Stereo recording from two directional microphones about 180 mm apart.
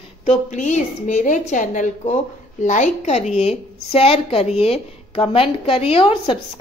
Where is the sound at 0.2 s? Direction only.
35° left (ahead or behind).